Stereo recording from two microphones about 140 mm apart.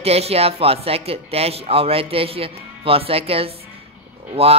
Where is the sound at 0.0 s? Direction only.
45° right (ahead or behind).